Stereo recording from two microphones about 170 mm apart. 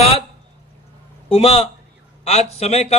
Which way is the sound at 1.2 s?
35° left (ahead or behind).